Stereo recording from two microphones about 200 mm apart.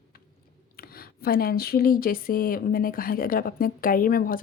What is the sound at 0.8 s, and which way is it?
Speech, 50° left (ahead or behind).